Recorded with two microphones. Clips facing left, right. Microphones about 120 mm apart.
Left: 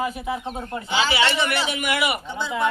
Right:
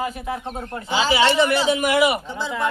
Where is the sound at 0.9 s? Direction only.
40° right (ahead or behind).